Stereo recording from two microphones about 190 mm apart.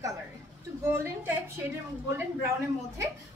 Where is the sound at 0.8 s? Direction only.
15° right (ahead or behind).